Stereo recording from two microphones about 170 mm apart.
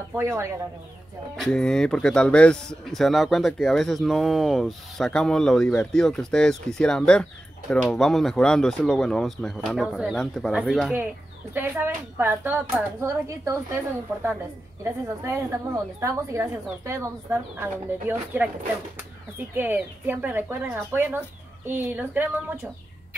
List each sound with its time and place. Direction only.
0.1 s a woman's voice: 15° right (ahead or behind)
1.3 s speech: 5° left (ahead or behind)
11.5 s a woman's voice: 10° right (ahead or behind)